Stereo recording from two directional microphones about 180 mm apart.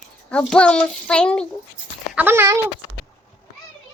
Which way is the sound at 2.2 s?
10° right (ahead or behind).